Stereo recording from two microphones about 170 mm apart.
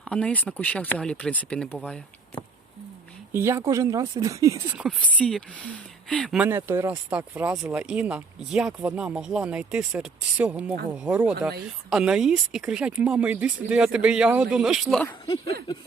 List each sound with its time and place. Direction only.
0.0 s speech: 5° left (ahead or behind)
3.3 s speech: 15° right (ahead or behind)
4.7 s speech: 5° right (ahead or behind)
4.9 s speech: 5° left (ahead or behind)
6.4 s speech: 15° right (ahead or behind); by 15.1 s centre (ahead or behind)